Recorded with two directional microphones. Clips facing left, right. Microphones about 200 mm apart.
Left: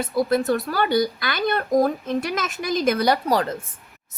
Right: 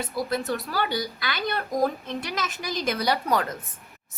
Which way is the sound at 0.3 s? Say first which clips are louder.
Left 7 dB; 45° left (ahead or behind).